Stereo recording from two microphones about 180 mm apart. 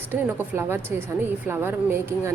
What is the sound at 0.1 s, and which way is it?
Speech, 10° right (ahead or behind).